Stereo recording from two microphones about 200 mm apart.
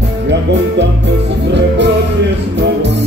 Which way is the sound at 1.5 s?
60° right (ahead or behind).